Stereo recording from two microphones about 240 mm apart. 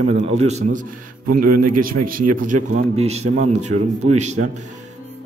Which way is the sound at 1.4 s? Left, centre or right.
Right.